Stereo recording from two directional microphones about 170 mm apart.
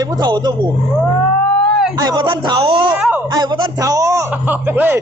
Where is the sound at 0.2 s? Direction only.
25° right (ahead or behind).